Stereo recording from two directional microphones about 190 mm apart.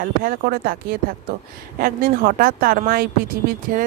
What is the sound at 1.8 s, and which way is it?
Speech, 50° right (ahead or behind).